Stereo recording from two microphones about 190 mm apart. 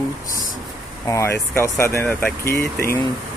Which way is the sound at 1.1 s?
15° left (ahead or behind).